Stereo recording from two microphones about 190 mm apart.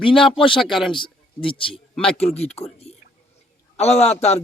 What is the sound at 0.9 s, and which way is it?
Speech, 25° left (ahead or behind).